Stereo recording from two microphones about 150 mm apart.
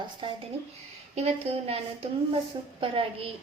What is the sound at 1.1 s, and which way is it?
A woman's voice, 45° right (ahead or behind).